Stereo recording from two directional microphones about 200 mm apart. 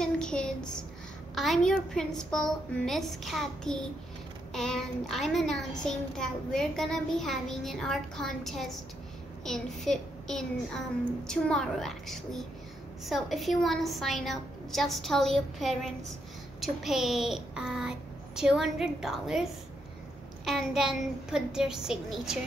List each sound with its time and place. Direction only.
0.0 s a sound: 5° left (ahead or behind)
1.3 s a child's voice: centre (ahead or behind)
20.4 s a child's voice: centre (ahead or behind)